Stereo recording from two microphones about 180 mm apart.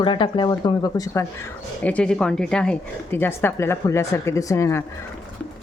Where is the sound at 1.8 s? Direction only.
10° left (ahead or behind).